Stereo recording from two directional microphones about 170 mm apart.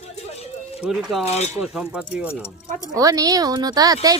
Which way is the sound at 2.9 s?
20° right (ahead or behind).